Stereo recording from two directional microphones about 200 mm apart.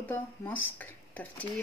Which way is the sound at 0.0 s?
10° left (ahead or behind).